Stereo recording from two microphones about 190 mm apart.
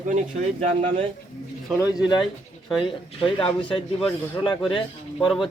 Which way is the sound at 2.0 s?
25° left (ahead or behind).